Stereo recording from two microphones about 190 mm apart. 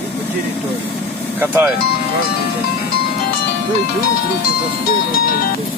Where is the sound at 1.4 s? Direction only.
10° right (ahead or behind).